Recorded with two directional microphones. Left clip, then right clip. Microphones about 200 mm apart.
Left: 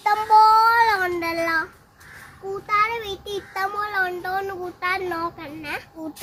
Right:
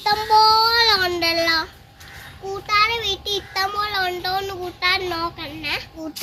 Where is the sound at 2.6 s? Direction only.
Centre (ahead or behind).